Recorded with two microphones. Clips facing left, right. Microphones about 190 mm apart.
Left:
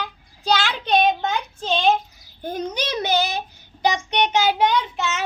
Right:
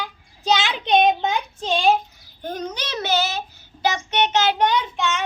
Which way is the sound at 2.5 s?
10° left (ahead or behind).